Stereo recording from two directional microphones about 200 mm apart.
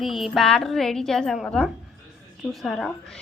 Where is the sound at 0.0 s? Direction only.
Centre (ahead or behind).